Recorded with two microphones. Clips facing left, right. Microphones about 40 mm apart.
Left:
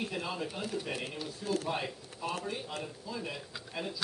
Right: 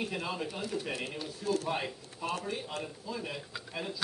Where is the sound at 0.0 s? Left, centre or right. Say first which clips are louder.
Right 1 dB; centre.